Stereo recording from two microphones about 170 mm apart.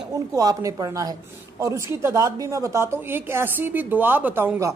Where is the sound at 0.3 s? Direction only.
20° right (ahead or behind).